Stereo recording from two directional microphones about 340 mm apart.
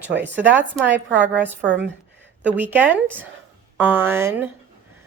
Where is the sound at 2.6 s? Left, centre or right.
Centre.